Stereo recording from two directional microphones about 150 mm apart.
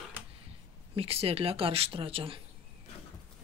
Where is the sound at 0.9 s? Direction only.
40° right (ahead or behind).